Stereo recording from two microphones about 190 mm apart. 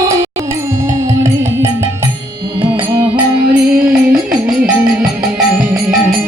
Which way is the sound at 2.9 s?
10° right (ahead or behind).